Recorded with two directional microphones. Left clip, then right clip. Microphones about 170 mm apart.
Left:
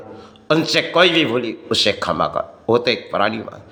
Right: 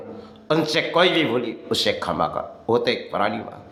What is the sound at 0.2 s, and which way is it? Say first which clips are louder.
A man's voice: left 4 dB; 15° left (ahead or behind).